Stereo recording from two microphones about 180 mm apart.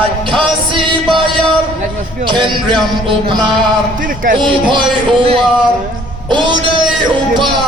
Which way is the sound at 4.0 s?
50° right (ahead or behind).